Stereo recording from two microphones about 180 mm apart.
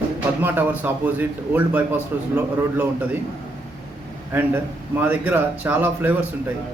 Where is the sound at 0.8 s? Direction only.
10° right (ahead or behind).